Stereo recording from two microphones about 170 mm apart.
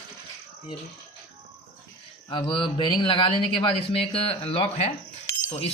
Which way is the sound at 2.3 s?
30° left (ahead or behind).